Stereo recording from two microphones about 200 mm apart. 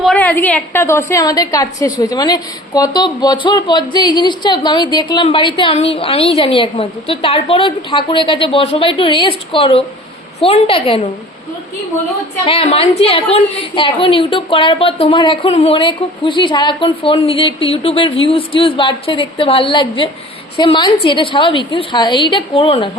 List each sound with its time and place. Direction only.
0.0 s a woman's voice: 5° left (ahead or behind); by 11.0 s 30° left (ahead or behind)
12.5 s a woman's voice: 30° left (ahead or behind)